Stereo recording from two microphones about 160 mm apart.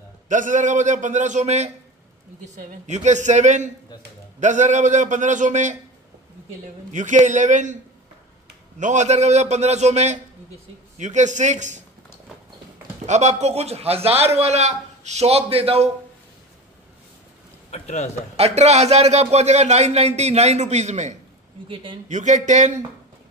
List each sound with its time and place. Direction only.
0.3 s a man's voice: 50° right (ahead or behind)
6.9 s a man's voice: 50° right (ahead or behind)
8.7 s a man's voice: 50° right (ahead or behind)
13.0 s a man's voice: 45° right (ahead or behind)
17.6 s speech: 45° left (ahead or behind)
18.3 s a man's voice: 40° right (ahead or behind)
21.6 s a man's voice: 35° right (ahead or behind)
22.0 s a man's voice: 50° right (ahead or behind)